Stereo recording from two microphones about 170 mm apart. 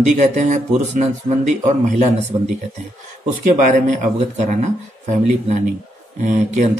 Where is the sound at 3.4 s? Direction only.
45° right (ahead or behind).